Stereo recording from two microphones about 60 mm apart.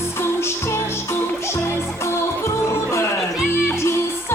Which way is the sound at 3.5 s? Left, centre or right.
Left.